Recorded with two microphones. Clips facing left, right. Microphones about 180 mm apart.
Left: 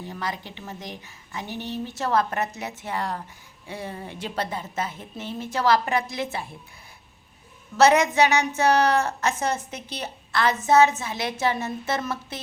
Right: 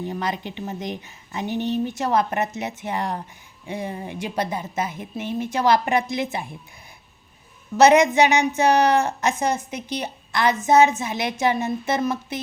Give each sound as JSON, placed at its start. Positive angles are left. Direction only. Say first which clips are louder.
{"t": 0.0, "sound": "a woman's voice", "louder": "right 5 dB", "side_deg": -20}
{"t": 7.8, "sound": "a woman's voice", "louder": "right 3 dB", "side_deg": -15}